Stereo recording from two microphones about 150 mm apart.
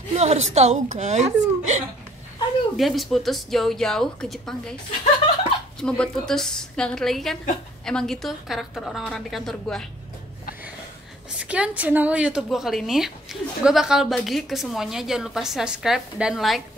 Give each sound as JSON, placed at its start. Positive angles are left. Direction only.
{"t": 0.1, "sound": "a woman's voice", "side_deg": -45}
{"t": 2.8, "sound": "a woman's voice", "side_deg": 0}
{"t": 5.8, "sound": "a woman's voice", "side_deg": 5}
{"t": 11.3, "sound": "a woman's voice", "side_deg": -10}